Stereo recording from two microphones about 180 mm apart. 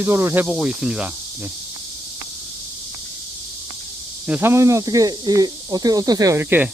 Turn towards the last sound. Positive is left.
turn(degrees=-10)  # may be behind; listen again after turning